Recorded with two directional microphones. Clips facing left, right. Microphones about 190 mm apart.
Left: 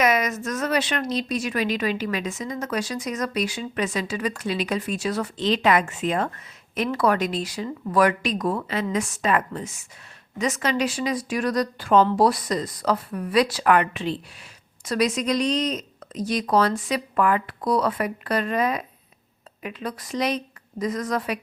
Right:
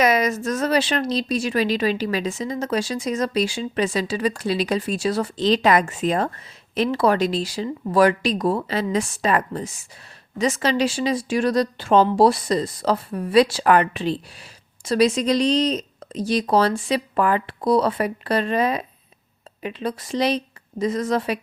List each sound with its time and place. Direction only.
0.0 s a woman's voice: 30° right (ahead or behind)